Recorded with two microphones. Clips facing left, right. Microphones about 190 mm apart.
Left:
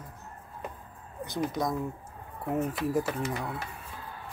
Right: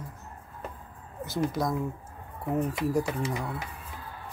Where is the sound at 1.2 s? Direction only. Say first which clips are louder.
Right 2 dB; centre (ahead or behind).